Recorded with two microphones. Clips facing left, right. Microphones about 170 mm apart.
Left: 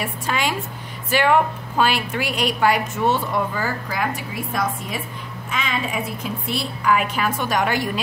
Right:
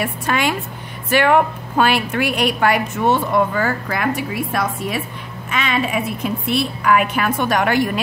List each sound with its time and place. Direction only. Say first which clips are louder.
0.0 s a woman's voice: right 4 dB; 60° right (ahead or behind)